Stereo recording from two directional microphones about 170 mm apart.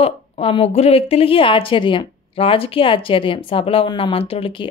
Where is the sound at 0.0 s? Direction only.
35° left (ahead or behind).